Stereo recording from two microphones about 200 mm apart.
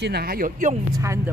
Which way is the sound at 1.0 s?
15° right (ahead or behind).